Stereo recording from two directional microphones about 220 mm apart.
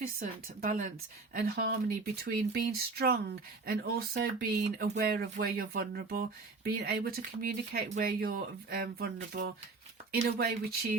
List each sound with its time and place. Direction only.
0.0 s a woman's voice: 40° right (ahead or behind)